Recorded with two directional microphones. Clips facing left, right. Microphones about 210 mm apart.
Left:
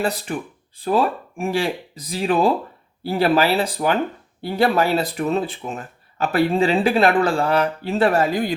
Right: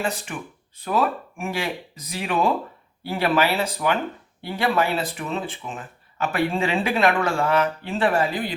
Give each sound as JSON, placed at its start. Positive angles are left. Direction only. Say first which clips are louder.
{"t": 0.0, "sound": "speech", "louder": "left 4 dB", "side_deg": 35}